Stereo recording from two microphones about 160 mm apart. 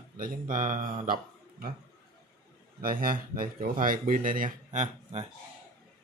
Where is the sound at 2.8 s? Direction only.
65° right (ahead or behind); by 5.2 s 50° right (ahead or behind).